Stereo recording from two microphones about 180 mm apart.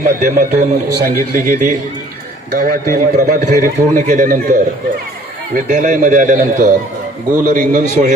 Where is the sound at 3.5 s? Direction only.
45° right (ahead or behind).